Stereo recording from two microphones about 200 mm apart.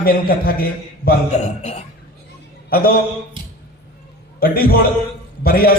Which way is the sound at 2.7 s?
45° left (ahead or behind).